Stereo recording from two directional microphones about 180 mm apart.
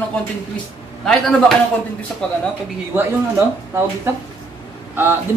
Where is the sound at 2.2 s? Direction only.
5° left (ahead or behind).